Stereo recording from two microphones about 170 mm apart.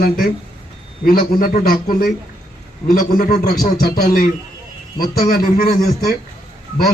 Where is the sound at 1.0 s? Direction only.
50° left (ahead or behind).